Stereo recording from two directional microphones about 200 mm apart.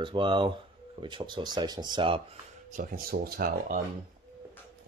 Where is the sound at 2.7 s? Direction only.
45° right (ahead or behind).